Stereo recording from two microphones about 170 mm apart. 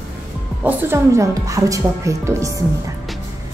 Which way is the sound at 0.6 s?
15° right (ahead or behind).